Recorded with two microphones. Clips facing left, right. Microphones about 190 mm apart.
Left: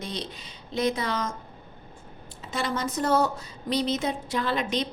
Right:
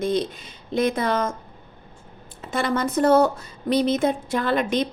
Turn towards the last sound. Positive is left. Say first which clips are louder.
# right 5 dB
turn(degrees=-55)  # may be behind; listen again after turning